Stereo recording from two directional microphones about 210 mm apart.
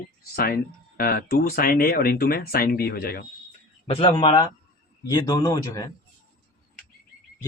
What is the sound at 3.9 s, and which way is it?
Speech, 25° left (ahead or behind).